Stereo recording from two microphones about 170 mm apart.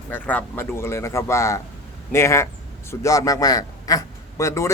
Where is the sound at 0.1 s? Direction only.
10° left (ahead or behind).